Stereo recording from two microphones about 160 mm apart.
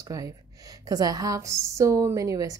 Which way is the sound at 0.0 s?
20° right (ahead or behind).